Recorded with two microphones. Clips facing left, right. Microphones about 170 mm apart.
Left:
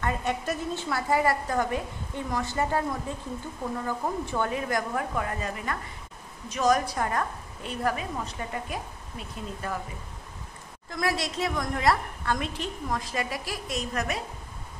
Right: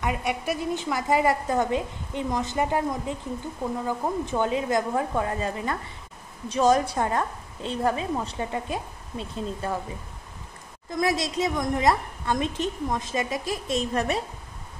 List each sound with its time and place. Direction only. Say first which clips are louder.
0.0 s a woman's voice: right 1 dB; 10° right (ahead or behind); by 9.8 s 25° right (ahead or behind)
10.9 s a woman's voice: right 4 dB; 20° right (ahead or behind)